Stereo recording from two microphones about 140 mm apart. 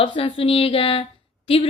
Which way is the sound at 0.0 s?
35° left (ahead or behind).